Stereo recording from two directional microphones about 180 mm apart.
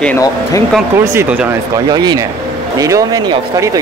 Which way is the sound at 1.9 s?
20° right (ahead or behind).